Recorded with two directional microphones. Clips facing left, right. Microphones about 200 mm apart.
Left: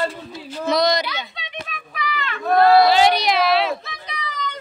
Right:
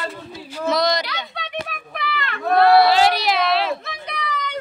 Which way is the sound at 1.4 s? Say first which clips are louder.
Right 5 dB; 60° right (ahead or behind).